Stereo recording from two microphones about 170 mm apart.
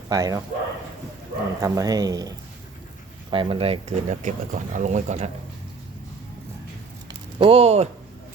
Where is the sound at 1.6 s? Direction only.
20° right (ahead or behind).